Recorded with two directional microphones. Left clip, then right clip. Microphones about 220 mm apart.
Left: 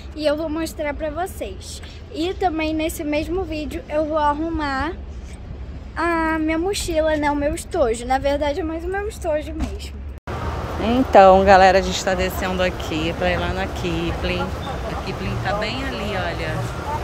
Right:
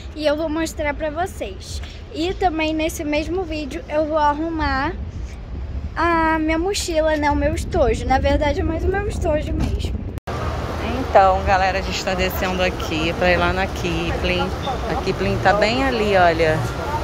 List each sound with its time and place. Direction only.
0.2 s a woman's voice: centre (ahead or behind)
5.9 s a woman's voice: 5° left (ahead or behind)
10.9 s speech: 45° left (ahead or behind)
12.0 s speech: 15° left (ahead or behind)
15.0 s speech: 20° right (ahead or behind)